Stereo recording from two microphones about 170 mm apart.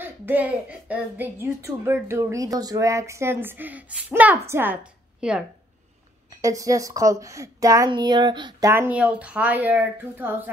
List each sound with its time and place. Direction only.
0.0 s a woman's voice: 10° right (ahead or behind)
6.3 s a woman's voice: 20° right (ahead or behind)